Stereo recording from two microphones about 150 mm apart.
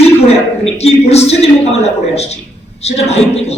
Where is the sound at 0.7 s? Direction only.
45° left (ahead or behind).